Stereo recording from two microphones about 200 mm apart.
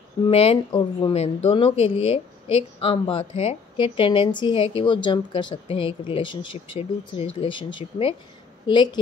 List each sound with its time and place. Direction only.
0.3 s a woman's voice: 30° left (ahead or behind)